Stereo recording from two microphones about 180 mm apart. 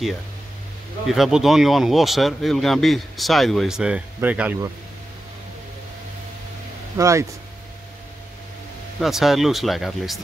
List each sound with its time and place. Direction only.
1.0 s speech: centre (ahead or behind)
7.0 s speech: 15° right (ahead or behind)
9.0 s speech: centre (ahead or behind)